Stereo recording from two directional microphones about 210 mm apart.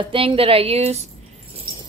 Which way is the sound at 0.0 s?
25° right (ahead or behind).